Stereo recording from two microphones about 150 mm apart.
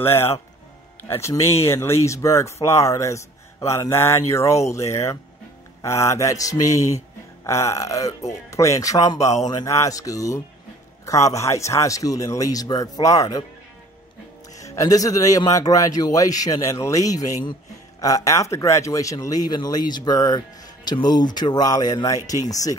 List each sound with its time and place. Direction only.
0.0 s speech: 15° left (ahead or behind)
14.6 s speech: 25° left (ahead or behind)